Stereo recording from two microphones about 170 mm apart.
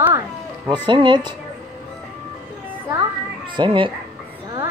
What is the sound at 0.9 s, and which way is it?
Speech, 25° right (ahead or behind).